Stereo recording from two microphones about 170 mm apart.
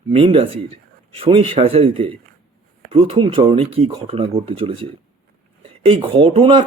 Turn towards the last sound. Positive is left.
turn(degrees=-30)  # may be behind; listen again after turning